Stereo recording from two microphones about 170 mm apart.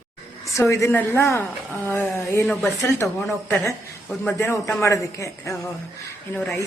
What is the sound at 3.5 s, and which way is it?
A woman's voice, 15° left (ahead or behind).